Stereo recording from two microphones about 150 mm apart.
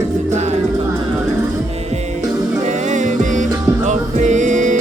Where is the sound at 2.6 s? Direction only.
55° right (ahead or behind).